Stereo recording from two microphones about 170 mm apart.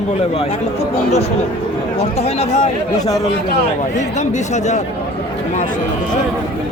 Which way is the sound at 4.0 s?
45° left (ahead or behind).